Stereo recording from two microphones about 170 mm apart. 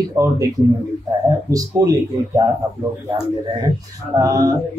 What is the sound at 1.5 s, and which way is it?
Speech, 20° right (ahead or behind).